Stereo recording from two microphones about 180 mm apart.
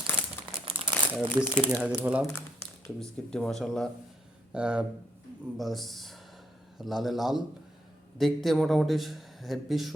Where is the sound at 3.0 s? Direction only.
5° left (ahead or behind).